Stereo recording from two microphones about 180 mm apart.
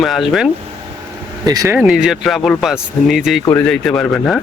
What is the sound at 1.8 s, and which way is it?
Speech, 5° right (ahead or behind).